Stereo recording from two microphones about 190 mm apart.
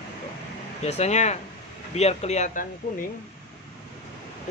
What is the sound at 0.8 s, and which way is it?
Mantra, 35° left (ahead or behind).